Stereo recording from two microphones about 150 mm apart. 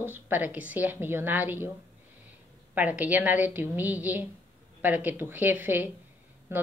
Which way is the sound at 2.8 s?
10° right (ahead or behind).